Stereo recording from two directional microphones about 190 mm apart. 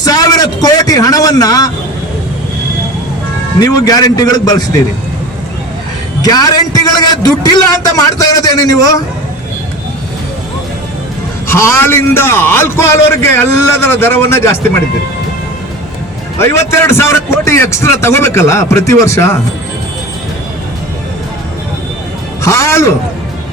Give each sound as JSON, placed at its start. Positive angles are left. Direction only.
{"t": 0.0, "sound": "a sound", "side_deg": 20}
{"t": 3.6, "sound": "a man's voice", "side_deg": 20}
{"t": 6.2, "sound": "a man's voice", "side_deg": 20}
{"t": 11.4, "sound": "a man's voice", "side_deg": 15}
{"t": 16.4, "sound": "a man's voice", "side_deg": 15}
{"t": 22.4, "sound": "a man's voice", "side_deg": 15}